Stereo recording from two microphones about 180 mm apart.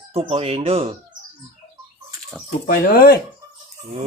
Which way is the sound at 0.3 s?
35° right (ahead or behind).